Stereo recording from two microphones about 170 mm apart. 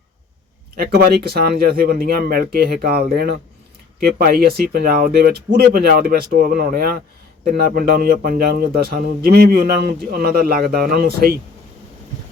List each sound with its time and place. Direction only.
0.8 s speech: 65° right (ahead or behind)